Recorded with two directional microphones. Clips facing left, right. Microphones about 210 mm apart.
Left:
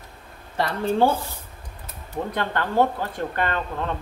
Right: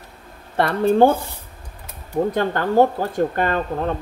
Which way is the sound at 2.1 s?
40° right (ahead or behind).